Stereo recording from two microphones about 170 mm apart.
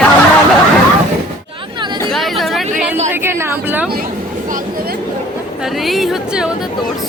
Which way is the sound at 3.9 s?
55° right (ahead or behind).